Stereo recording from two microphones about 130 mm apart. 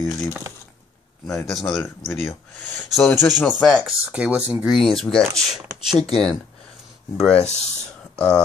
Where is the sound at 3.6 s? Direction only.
5° left (ahead or behind).